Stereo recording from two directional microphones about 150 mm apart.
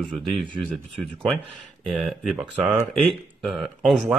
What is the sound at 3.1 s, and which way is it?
Speech, centre (ahead or behind).